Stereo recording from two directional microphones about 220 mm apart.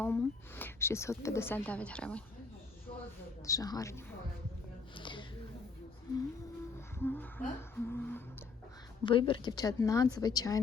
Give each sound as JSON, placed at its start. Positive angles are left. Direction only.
{"t": 0.0, "sound": "a woman's voice", "side_deg": 10}
{"t": 3.4, "sound": "a woman's voice", "side_deg": 15}
{"t": 4.9, "sound": "a sound", "side_deg": 20}
{"t": 7.0, "sound": "music", "side_deg": 10}
{"t": 9.0, "sound": "a woman's voice", "side_deg": 25}